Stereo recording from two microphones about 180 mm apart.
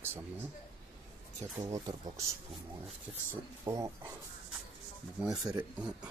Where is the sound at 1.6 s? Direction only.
20° right (ahead or behind).